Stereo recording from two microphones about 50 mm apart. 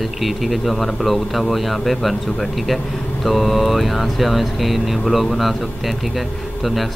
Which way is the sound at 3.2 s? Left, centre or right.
Centre.